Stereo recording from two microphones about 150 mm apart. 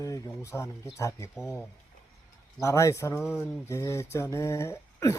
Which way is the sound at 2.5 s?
20° left (ahead or behind).